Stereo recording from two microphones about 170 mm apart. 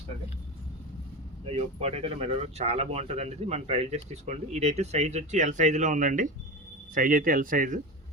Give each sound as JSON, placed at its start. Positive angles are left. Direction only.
{"t": 1.5, "sound": "speech", "side_deg": -35}